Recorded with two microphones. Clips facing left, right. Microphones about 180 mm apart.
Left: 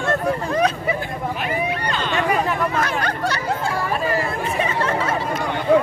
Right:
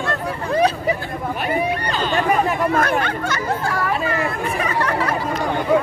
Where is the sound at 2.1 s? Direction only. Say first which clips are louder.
Right 2 dB; 45° right (ahead or behind).